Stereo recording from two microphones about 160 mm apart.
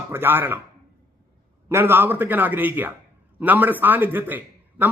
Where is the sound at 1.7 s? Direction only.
15° right (ahead or behind).